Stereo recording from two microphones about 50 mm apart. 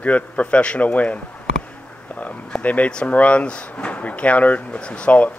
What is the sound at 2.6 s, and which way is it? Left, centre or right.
Speech, left.